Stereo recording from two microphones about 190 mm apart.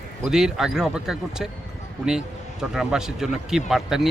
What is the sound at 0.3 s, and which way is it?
Speech, centre (ahead or behind).